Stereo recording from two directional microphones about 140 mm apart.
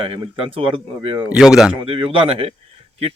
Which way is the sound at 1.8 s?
40° right (ahead or behind).